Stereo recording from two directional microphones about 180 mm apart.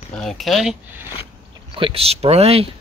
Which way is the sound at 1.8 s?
30° right (ahead or behind).